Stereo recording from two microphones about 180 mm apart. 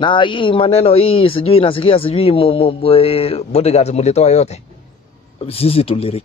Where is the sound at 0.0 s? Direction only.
25° left (ahead or behind).